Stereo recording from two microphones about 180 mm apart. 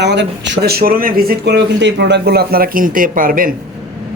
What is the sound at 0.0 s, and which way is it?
Speech, 75° right (ahead or behind).